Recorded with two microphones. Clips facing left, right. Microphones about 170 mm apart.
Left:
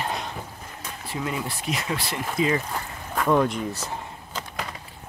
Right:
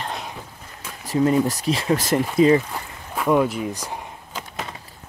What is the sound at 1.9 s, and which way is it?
Speech, 45° right (ahead or behind).